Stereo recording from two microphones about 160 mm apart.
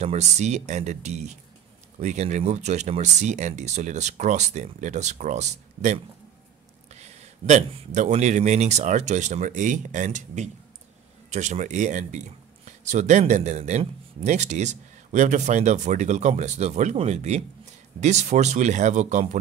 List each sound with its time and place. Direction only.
0.0 s a man's voice: 45° right (ahead or behind)